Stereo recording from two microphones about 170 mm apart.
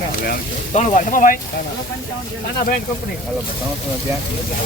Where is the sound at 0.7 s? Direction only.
45° left (ahead or behind).